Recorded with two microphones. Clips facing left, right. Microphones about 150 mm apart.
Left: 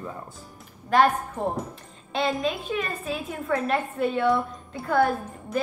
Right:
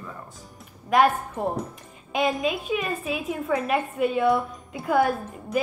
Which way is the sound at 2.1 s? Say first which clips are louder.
Right 1 dB; 10° right (ahead or behind).